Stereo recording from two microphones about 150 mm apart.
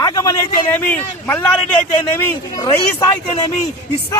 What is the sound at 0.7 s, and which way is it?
Speech, 10° left (ahead or behind).